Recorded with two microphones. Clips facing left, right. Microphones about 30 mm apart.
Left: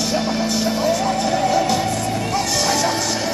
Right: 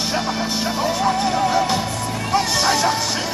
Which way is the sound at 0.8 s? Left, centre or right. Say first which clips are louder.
Right 2 dB; centre.